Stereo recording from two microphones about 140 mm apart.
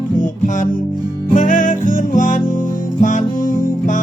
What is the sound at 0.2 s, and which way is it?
Music, 65° left (ahead or behind).